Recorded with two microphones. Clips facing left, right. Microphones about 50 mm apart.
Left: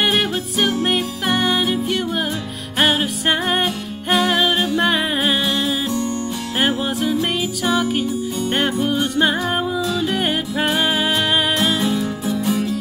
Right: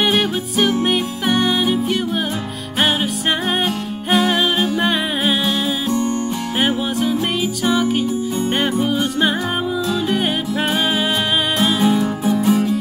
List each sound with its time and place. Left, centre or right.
0.0 s music: centre
11.8 s music: centre